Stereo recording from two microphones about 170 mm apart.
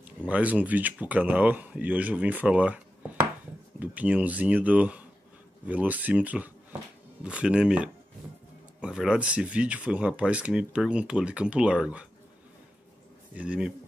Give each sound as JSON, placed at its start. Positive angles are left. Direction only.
{"t": 0.3, "sound": "speech", "side_deg": -10}
{"t": 13.3, "sound": "speech", "side_deg": -5}